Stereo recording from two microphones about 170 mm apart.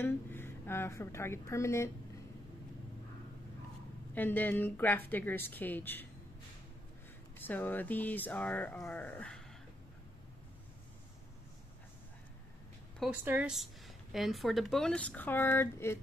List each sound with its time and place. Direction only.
0.0 s a woman's voice: 15° left (ahead or behind)
4.1 s speech: 10° left (ahead or behind)
7.3 s speech: 10° left (ahead or behind)
13.1 s speech: 10° right (ahead or behind); by 16.0 s 15° left (ahead or behind)